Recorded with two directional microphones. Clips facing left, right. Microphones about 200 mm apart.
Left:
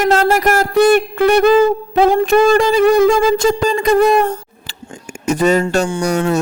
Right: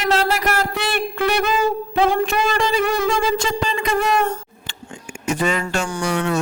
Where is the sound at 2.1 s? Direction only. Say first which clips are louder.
Left 9 dB; 40° left (ahead or behind).